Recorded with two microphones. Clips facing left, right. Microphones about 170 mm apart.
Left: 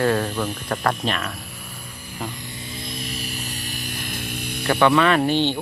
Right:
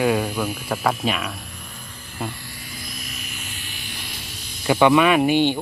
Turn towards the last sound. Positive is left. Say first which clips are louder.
# right 2 dB
turn(degrees=-10)  # may be behind; listen again after turning